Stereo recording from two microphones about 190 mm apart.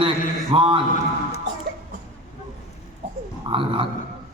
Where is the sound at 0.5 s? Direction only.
25° right (ahead or behind).